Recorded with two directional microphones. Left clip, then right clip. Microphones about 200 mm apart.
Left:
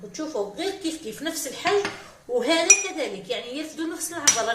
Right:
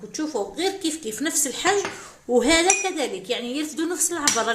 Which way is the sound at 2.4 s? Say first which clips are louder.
Even; 45° right (ahead or behind).